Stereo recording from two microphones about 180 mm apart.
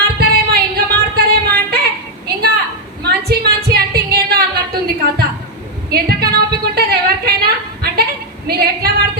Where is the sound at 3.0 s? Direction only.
60° right (ahead or behind).